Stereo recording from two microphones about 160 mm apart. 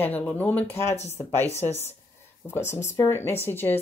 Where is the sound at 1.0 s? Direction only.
40° left (ahead or behind).